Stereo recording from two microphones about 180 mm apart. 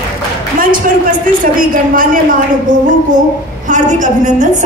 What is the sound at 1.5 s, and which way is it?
Speech, 50° right (ahead or behind).